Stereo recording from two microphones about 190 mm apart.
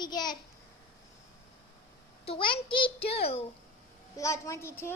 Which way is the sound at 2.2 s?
25° left (ahead or behind).